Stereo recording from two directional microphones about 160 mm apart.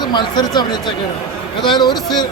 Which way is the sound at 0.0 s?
30° left (ahead or behind).